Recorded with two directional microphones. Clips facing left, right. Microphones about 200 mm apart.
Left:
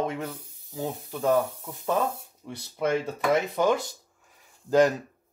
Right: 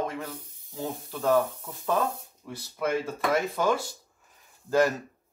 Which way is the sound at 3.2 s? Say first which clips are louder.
Left 4 dB; 20° left (ahead or behind).